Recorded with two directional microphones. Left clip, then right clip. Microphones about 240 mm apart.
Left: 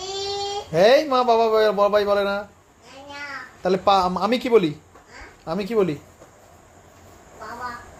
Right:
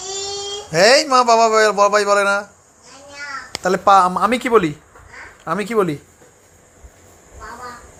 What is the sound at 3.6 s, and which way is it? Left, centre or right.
A man's voice, centre.